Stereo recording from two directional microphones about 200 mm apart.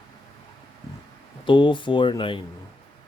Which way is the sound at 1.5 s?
25° left (ahead or behind).